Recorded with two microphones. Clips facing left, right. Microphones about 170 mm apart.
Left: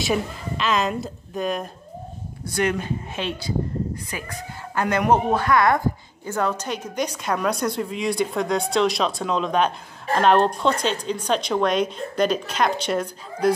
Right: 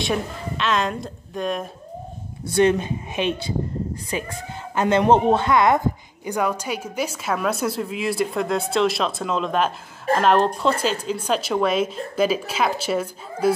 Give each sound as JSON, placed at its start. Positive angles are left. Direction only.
{"t": 0.0, "sound": "a woman's voice", "side_deg": 0}
{"t": 2.4, "sound": "a woman's voice", "side_deg": -25}